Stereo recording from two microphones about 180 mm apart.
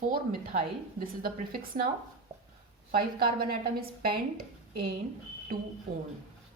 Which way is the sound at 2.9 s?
55° right (ahead or behind).